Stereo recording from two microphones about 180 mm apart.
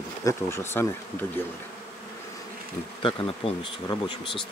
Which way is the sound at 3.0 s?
30° left (ahead or behind).